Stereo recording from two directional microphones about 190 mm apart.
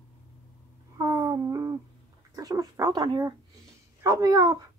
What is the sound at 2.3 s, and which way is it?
Speech, 20° right (ahead or behind).